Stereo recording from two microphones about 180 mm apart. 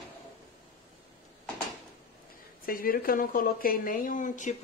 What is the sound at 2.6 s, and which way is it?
Speech, 55° left (ahead or behind).